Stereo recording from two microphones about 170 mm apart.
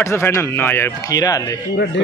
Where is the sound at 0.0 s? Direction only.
15° left (ahead or behind).